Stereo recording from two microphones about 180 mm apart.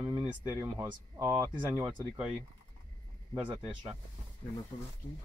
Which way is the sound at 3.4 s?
10° right (ahead or behind).